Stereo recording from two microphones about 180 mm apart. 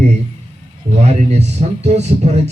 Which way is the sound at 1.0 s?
35° right (ahead or behind).